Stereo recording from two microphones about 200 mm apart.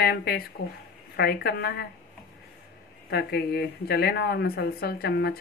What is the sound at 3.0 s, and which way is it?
Speech, 55° left (ahead or behind).